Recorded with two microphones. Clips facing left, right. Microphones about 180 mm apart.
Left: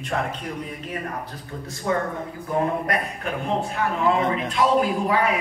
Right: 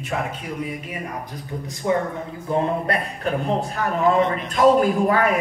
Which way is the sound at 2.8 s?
35° right (ahead or behind).